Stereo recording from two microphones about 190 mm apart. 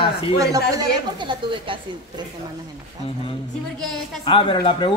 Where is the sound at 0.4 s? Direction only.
20° right (ahead or behind).